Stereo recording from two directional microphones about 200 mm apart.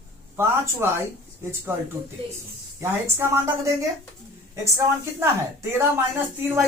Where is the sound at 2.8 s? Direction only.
10° right (ahead or behind).